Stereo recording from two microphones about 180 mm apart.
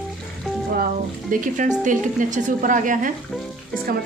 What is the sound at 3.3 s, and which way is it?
Frying, 5° left (ahead or behind).